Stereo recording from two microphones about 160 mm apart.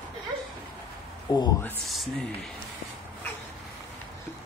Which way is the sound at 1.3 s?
25° left (ahead or behind).